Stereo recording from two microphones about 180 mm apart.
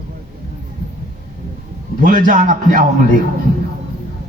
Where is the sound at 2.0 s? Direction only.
45° right (ahead or behind).